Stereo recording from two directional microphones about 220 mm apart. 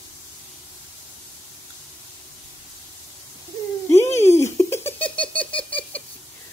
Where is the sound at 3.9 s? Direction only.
10° left (ahead or behind).